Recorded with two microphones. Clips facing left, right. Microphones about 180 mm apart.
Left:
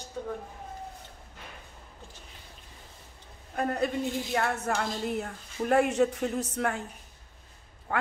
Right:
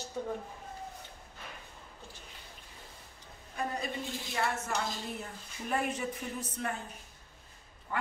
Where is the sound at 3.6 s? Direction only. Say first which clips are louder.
Left 8 dB; 65° left (ahead or behind).